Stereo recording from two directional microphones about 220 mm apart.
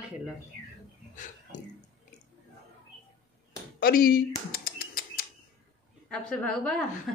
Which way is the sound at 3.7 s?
40° left (ahead or behind).